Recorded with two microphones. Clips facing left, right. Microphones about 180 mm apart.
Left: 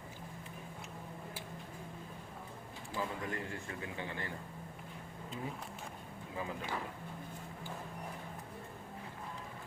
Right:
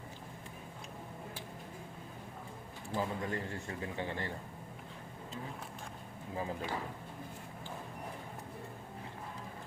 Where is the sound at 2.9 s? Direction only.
35° right (ahead or behind).